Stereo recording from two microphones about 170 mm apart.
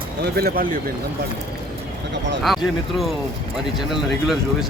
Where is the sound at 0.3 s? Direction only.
65° right (ahead or behind).